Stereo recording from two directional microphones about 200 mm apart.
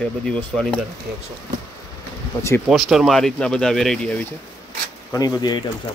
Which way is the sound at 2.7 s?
Centre (ahead or behind).